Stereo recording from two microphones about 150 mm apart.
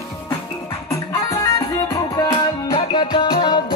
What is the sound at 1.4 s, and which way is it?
Music, 25° left (ahead or behind).